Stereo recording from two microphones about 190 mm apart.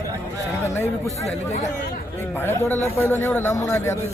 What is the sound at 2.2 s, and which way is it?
A man's voice, 10° left (ahead or behind).